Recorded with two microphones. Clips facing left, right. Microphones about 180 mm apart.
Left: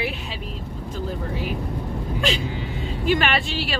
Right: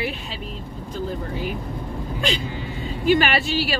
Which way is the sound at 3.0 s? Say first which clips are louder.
Right 3 dB; centre (ahead or behind).